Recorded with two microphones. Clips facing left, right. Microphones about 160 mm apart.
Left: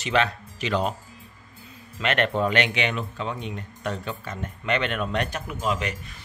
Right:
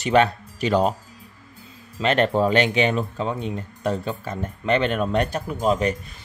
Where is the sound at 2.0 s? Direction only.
35° right (ahead or behind).